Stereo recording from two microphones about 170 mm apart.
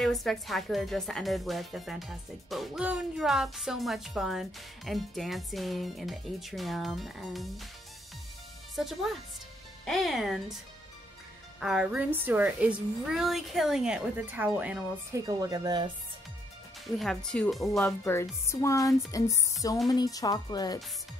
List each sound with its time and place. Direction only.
0.0 s a woman's voice: centre (ahead or behind)
8.7 s a woman's voice: centre (ahead or behind)
11.6 s a woman's voice: 5° right (ahead or behind)
15.2 s speech: 20° right (ahead or behind)
16.8 s a woman's voice: centre (ahead or behind)
18.0 s speech: 15° left (ahead or behind)